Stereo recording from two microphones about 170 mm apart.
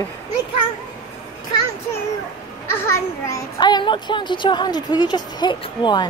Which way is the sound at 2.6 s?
15° left (ahead or behind).